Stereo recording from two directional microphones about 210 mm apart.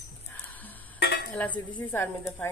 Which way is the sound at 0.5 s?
10° left (ahead or behind).